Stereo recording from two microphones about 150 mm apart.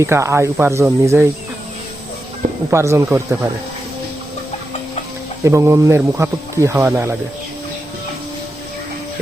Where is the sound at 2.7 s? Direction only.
20° right (ahead or behind).